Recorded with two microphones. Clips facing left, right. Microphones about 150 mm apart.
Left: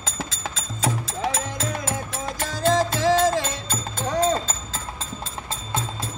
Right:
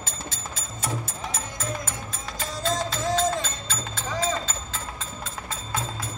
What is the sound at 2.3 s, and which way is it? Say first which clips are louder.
Music: left 7 dB; 60° left (ahead or behind).